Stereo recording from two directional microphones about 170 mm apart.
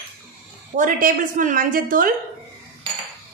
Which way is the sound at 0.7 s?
50° right (ahead or behind).